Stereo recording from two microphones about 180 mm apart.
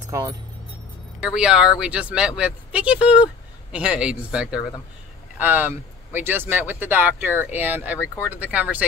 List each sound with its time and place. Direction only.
0.1 s speech: 20° right (ahead or behind)
1.2 s speech: 5° right (ahead or behind)